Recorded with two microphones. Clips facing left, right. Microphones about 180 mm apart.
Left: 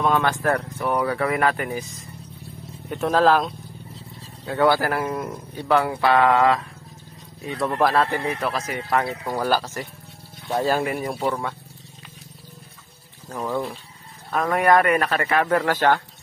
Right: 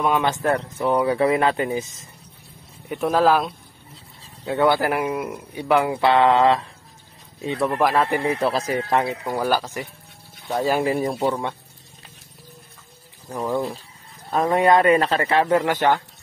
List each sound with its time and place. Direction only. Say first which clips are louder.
0.0 s speech: even; 15° right (ahead or behind)
2.9 s speech: even; 10° right (ahead or behind); by 6.6 s 25° right (ahead or behind)
7.6 s speech: even; 10° right (ahead or behind)
8.3 s speech: right 4 dB; 30° right (ahead or behind)
9.2 s speech: right 1 dB; 10° right (ahead or behind)
10.9 s speech: right 3 dB; 25° right (ahead or behind)
13.3 s speech: right 2 dB; 20° right (ahead or behind)